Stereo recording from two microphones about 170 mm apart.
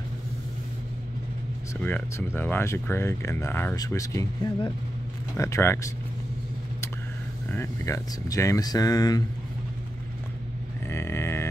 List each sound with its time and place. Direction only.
1.8 s speech: 10° left (ahead or behind)
7.4 s speech: 15° left (ahead or behind)
10.9 s a sound: 15° left (ahead or behind)